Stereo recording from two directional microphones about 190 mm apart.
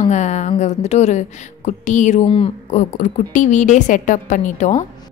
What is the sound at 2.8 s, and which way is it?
Speech, 40° left (ahead or behind).